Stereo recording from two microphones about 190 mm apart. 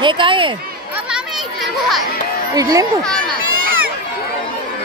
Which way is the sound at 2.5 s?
20° right (ahead or behind).